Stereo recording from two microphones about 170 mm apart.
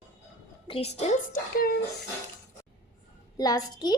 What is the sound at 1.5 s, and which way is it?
Speech, 60° left (ahead or behind).